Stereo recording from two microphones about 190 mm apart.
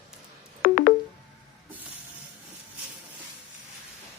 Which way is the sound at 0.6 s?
45° left (ahead or behind).